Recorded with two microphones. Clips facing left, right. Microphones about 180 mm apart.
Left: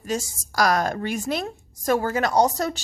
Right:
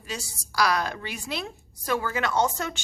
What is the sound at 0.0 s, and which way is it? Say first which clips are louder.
A woman's voice: left 9 dB; 45° left (ahead or behind).